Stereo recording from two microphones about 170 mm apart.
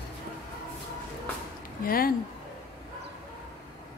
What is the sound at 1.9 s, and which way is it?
Speech, 60° left (ahead or behind).